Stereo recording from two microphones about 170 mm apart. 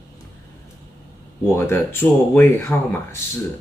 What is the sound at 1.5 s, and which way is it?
Speech, 15° left (ahead or behind).